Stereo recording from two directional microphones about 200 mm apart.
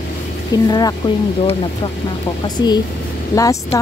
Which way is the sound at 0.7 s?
20° left (ahead or behind).